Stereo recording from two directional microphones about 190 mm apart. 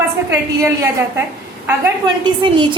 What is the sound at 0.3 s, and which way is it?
Speech, 15° right (ahead or behind).